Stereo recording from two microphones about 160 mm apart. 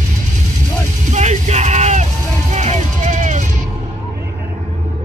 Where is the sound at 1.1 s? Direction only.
50° right (ahead or behind).